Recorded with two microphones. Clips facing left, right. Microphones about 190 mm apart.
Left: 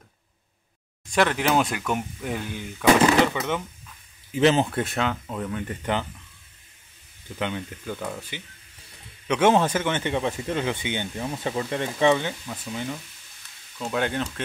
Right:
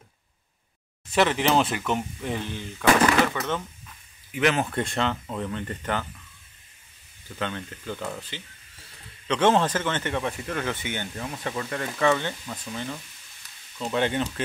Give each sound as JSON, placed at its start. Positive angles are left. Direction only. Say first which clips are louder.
{"t": 1.1, "sound": "speech", "louder": "even", "side_deg": 0}
{"t": 4.3, "sound": "speech", "louder": "left 4 dB", "side_deg": 30}
{"t": 4.6, "sound": "speech", "louder": "even", "side_deg": 5}
{"t": 7.3, "sound": "speech", "louder": "left 2 dB", "side_deg": 15}